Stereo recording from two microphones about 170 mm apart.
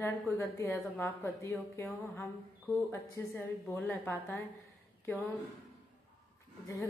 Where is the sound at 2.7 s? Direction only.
15° left (ahead or behind).